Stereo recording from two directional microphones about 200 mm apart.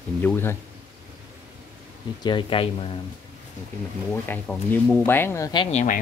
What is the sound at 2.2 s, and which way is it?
Speech, 25° left (ahead or behind).